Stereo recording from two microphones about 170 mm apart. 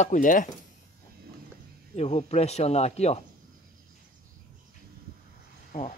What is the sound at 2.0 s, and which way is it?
Speech, 40° left (ahead or behind).